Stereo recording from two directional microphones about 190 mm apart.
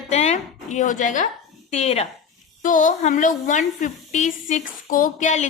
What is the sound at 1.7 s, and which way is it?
A woman's voice, 35° left (ahead or behind).